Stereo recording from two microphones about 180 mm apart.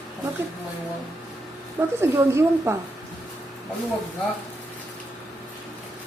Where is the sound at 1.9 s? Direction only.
15° right (ahead or behind).